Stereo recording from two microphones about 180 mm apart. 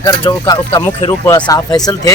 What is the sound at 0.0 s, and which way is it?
Speech, 20° left (ahead or behind).